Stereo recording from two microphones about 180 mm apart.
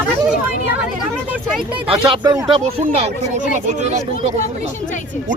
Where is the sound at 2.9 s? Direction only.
40° right (ahead or behind).